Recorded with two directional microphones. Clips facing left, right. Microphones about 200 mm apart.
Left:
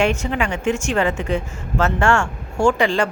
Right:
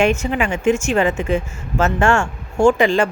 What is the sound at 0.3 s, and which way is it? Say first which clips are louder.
Speech: right 3 dB; 15° right (ahead or behind).